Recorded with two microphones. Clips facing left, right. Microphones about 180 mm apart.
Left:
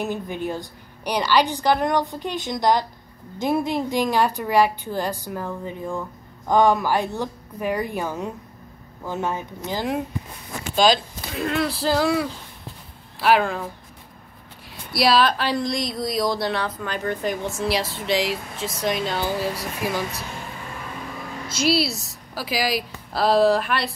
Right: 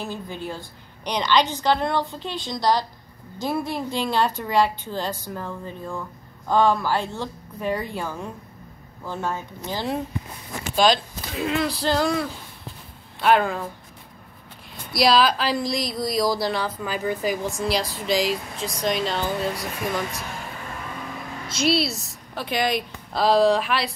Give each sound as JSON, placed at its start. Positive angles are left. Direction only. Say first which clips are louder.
{"t": 0.0, "sound": "speech", "louder": "left 5 dB", "side_deg": 15}
{"t": 10.8, "sound": "speech", "louder": "left 1 dB", "side_deg": 0}
{"t": 14.9, "sound": "speech", "louder": "even", "side_deg": 0}
{"t": 21.5, "sound": "a woman's voice", "louder": "left 1 dB", "side_deg": 0}